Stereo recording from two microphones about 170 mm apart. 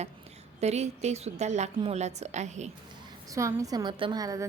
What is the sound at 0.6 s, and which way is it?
A woman's voice, 40° right (ahead or behind).